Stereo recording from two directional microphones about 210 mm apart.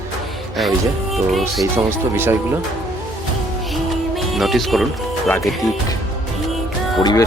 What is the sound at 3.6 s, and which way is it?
Music, centre (ahead or behind).